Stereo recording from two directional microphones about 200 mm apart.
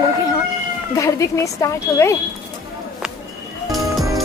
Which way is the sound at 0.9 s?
15° left (ahead or behind).